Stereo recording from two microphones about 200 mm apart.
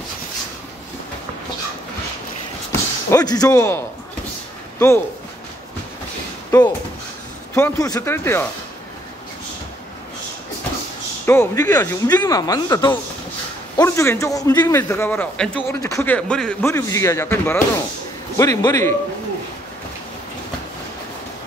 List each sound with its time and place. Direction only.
2.7 s speech: 15° left (ahead or behind)
6.5 s a man's voice: 20° left (ahead or behind)
11.2 s a man's voice: 10° left (ahead or behind)